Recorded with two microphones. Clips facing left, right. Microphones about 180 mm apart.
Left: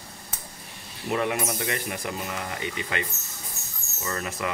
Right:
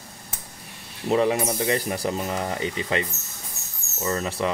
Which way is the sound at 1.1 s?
30° right (ahead or behind).